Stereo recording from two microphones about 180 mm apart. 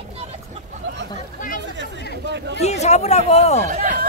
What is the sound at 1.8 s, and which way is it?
Chatter, 75° right (ahead or behind).